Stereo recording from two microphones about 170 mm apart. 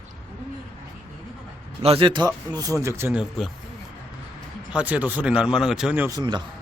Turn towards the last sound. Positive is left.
turn(degrees=-25)  # may be behind; listen again after turning